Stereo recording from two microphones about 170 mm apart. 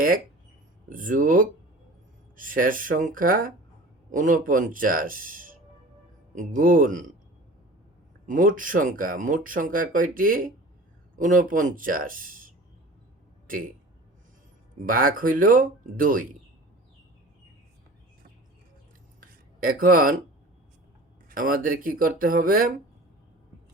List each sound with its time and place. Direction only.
0.9 s speech: 50° right (ahead or behind)
8.3 s speech: 50° right (ahead or behind)
14.8 s speech: 55° right (ahead or behind)
19.2 s a sound: 55° right (ahead or behind)
21.2 s speech: 55° right (ahead or behind)